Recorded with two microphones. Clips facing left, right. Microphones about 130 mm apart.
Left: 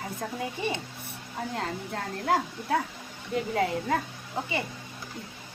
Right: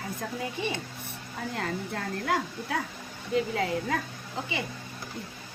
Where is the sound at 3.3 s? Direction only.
50° left (ahead or behind).